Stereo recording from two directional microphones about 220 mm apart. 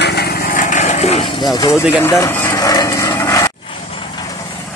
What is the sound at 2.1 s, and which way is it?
Vehicle, 10° left (ahead or behind).